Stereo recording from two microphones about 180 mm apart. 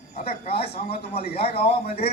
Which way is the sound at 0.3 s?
35° left (ahead or behind).